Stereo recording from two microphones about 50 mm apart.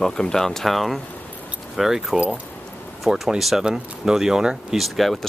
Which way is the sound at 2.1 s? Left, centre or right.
Right.